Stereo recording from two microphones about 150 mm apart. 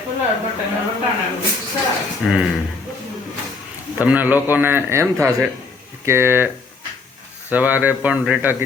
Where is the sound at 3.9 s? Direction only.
10° right (ahead or behind).